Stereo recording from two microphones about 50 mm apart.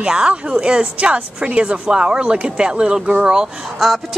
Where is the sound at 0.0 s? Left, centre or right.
Centre.